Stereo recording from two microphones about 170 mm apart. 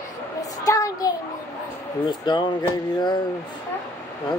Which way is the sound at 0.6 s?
20° left (ahead or behind).